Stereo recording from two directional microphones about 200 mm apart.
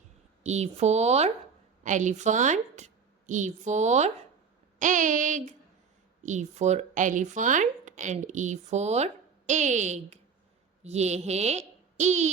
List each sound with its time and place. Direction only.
0.4 s a woman's voice: 35° right (ahead or behind)